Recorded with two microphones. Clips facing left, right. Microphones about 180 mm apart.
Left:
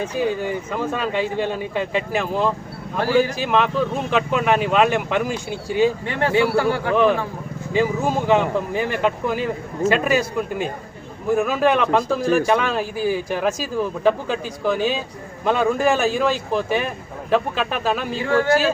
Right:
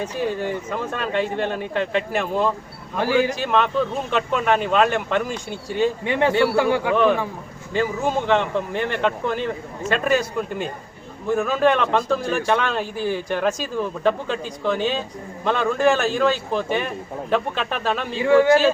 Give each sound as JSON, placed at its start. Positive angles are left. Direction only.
{"t": 0.0, "sound": "a man's voice", "side_deg": 0}
{"t": 3.0, "sound": "a man's voice", "side_deg": -15}
{"t": 3.3, "sound": "a man's voice", "side_deg": 5}
{"t": 6.1, "sound": "a man's voice", "side_deg": -20}
{"t": 6.9, "sound": "a man's voice", "side_deg": 5}
{"t": 18.3, "sound": "a man's voice", "side_deg": -15}